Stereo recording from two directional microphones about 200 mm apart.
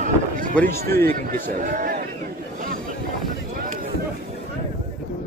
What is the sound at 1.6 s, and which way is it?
Speech, 40° right (ahead or behind).